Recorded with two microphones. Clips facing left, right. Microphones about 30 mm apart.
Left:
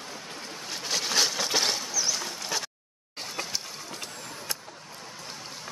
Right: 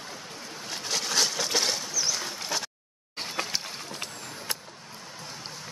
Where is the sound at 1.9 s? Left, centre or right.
Centre.